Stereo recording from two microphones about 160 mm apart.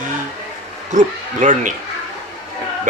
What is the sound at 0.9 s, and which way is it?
Speech, 50° right (ahead or behind).